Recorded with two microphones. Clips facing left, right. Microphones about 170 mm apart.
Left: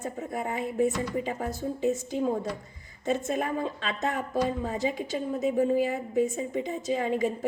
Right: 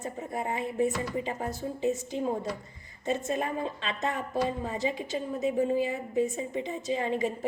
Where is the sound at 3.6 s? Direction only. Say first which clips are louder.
Left 2 dB; 45° left (ahead or behind).